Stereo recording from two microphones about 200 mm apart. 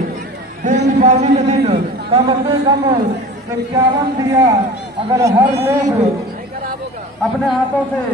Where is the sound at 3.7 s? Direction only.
15° right (ahead or behind).